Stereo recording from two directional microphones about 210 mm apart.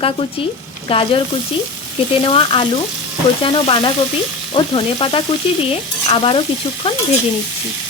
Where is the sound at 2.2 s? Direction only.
25° left (ahead or behind).